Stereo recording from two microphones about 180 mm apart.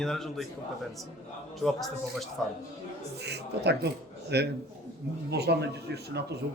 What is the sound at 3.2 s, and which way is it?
Speech, 65° right (ahead or behind).